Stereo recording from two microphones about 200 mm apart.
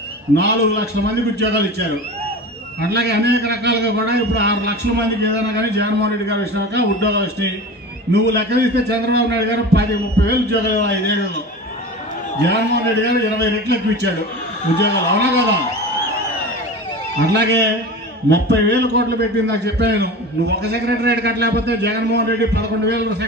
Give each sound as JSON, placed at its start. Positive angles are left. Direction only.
{"t": 0.4, "sound": "a man's voice", "side_deg": -55}
{"t": 2.9, "sound": "a man's voice", "side_deg": -55}
{"t": 12.4, "sound": "a man's voice", "side_deg": -55}
{"t": 14.8, "sound": "a man's voice", "side_deg": -60}
{"t": 17.2, "sound": "a man's voice", "side_deg": -55}